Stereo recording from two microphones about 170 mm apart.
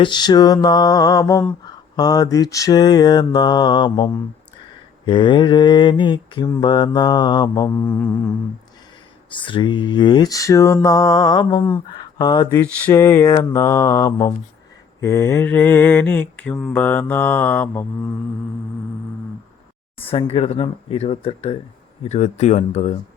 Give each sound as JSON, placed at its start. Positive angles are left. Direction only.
{"t": 0.0, "sound": "mantra", "side_deg": 25}
{"t": 7.9, "sound": "mantra", "side_deg": 10}
{"t": 9.3, "sound": "mantra", "side_deg": 30}
{"t": 11.9, "sound": "speech", "side_deg": 25}
{"t": 12.8, "sound": "mantra", "side_deg": 15}
{"t": 20.0, "sound": "speech", "side_deg": 35}